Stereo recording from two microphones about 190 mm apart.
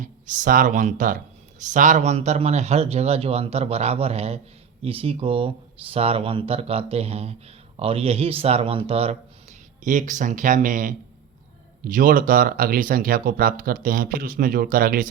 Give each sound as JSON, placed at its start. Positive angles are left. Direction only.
{"t": 0.0, "sound": "speech", "side_deg": -45}